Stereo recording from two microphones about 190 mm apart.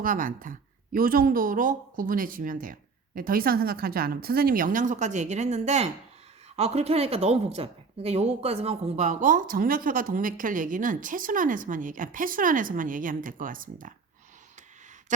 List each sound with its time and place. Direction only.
0.0 s a woman's voice: 45° right (ahead or behind)